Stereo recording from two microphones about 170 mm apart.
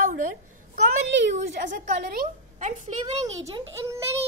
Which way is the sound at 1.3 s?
45° right (ahead or behind).